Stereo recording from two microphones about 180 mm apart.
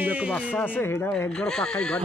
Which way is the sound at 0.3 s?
5° left (ahead or behind).